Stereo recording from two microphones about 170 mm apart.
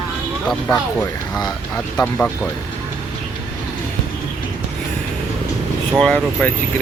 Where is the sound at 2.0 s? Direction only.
5° left (ahead or behind).